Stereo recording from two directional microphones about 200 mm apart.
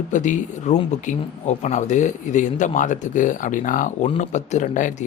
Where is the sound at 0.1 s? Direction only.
40° left (ahead or behind).